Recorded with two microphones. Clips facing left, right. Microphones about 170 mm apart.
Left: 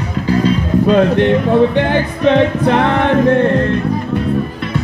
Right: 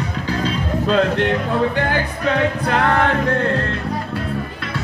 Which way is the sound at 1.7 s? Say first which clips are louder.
Left 6 dB; 20° left (ahead or behind).